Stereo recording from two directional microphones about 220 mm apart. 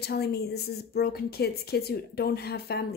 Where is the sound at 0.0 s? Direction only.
45° left (ahead or behind).